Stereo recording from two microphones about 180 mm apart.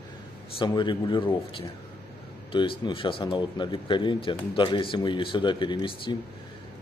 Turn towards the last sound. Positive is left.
turn(degrees=25)  # may be behind; listen again after turning